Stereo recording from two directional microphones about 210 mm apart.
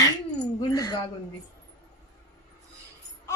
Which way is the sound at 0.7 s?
20° left (ahead or behind).